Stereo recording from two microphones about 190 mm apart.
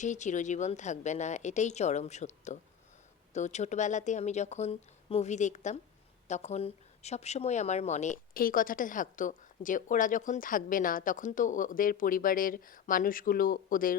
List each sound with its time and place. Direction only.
0.0 s a woman's voice: 40° left (ahead or behind)